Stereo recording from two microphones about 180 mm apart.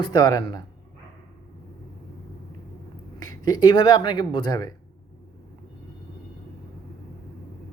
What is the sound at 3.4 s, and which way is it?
Speech, 20° left (ahead or behind).